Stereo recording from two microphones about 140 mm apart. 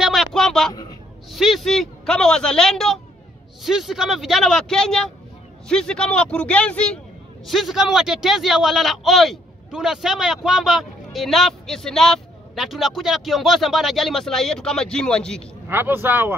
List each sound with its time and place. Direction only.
0.0 s a sound: centre (ahead or behind)
1.3 s a man's voice: centre (ahead or behind)
15.7 s speech: 15° right (ahead or behind)